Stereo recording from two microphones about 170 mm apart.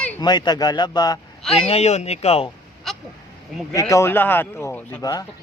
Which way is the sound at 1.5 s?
35° left (ahead or behind).